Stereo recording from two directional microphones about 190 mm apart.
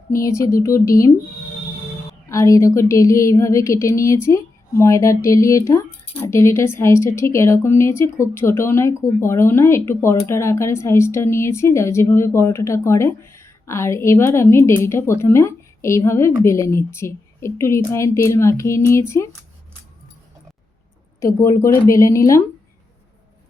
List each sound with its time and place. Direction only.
0.2 s a woman's voice: 15° left (ahead or behind)
2.3 s a woman's voice: 15° left (ahead or behind)
21.2 s a woman's voice: 15° left (ahead or behind)